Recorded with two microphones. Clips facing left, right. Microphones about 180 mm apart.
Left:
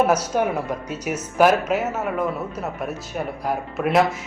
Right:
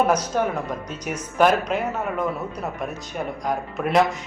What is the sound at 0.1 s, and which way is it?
Speech, 10° left (ahead or behind).